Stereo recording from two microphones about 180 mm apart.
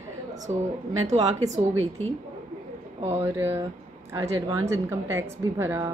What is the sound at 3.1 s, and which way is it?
Speech, 15° right (ahead or behind).